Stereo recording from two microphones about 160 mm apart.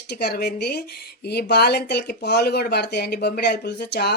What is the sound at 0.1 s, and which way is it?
Speech, 90° left.